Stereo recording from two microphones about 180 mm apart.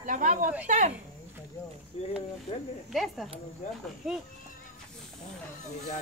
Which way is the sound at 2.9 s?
Centre (ahead or behind).